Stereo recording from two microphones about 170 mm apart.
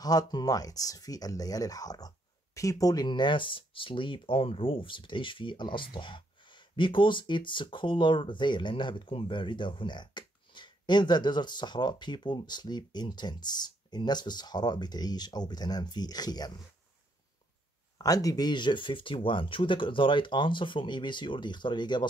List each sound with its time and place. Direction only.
0.0 s speech: 20° left (ahead or behind)
17.9 s speech: 20° left (ahead or behind)